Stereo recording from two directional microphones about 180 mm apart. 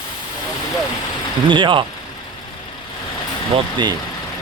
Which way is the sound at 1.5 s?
25° right (ahead or behind).